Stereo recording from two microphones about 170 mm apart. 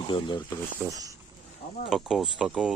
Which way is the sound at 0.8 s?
20° right (ahead or behind).